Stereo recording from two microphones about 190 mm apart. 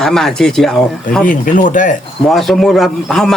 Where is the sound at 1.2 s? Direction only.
45° left (ahead or behind).